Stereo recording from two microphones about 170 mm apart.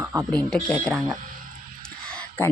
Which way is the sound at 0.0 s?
5° right (ahead or behind).